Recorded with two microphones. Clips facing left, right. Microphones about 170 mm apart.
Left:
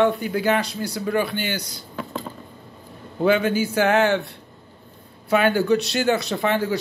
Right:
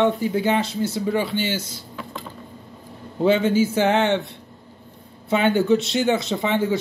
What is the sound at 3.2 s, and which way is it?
Speech, 25° right (ahead or behind).